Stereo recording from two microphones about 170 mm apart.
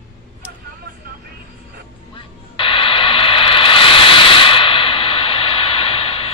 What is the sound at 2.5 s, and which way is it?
Radio, 30° left (ahead or behind).